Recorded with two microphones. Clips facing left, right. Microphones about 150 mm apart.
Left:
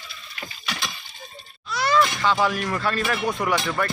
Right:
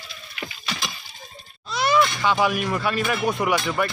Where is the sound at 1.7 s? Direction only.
20° right (ahead or behind).